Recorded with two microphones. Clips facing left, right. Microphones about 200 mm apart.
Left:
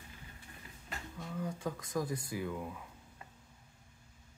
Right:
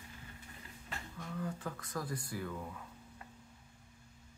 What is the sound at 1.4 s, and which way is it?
Speech, 15° left (ahead or behind).